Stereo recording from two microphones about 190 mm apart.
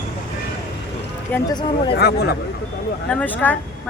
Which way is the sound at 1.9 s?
55° left (ahead or behind).